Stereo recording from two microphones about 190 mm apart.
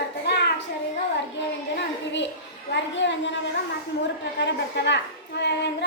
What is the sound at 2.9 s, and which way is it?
Speech, 70° left (ahead or behind).